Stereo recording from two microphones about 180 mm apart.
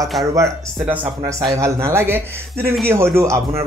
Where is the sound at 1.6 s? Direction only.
15° right (ahead or behind).